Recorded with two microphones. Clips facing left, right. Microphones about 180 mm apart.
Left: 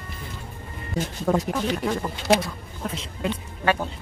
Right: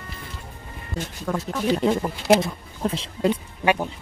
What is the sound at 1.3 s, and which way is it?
Speech, 30° left (ahead or behind).